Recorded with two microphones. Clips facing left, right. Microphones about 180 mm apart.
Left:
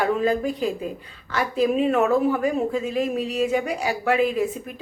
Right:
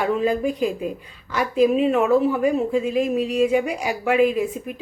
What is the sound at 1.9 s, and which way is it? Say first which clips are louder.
A woman's voice: right 2 dB; 10° right (ahead or behind).